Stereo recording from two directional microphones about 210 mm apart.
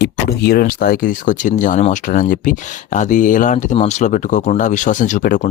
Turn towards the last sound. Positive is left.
turn(degrees=40)  # may be behind; listen again after turning